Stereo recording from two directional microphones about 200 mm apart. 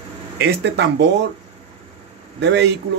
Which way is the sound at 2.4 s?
60° right (ahead or behind).